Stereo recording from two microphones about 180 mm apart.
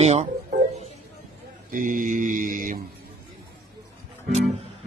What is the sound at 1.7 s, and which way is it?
Mantra, 50° right (ahead or behind).